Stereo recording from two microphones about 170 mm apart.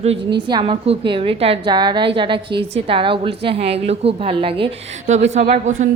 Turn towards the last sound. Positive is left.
turn(degrees=-45)  # may be behind; listen again after turning